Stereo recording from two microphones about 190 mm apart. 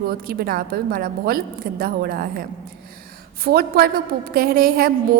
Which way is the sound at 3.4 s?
55° right (ahead or behind).